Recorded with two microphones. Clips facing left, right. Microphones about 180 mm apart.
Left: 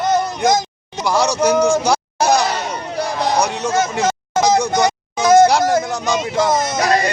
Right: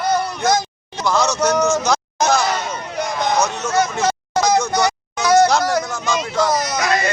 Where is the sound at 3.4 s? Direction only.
20° left (ahead or behind).